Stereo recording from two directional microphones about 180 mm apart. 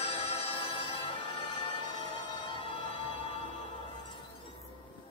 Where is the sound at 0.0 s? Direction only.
35° left (ahead or behind).